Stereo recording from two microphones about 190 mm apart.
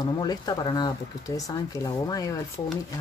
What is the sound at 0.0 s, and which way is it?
Speech, 20° left (ahead or behind).